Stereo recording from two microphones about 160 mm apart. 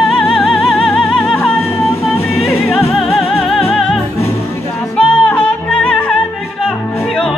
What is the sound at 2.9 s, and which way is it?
Music, centre (ahead or behind).